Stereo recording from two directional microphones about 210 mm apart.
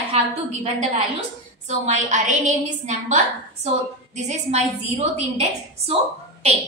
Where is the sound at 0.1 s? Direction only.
30° right (ahead or behind).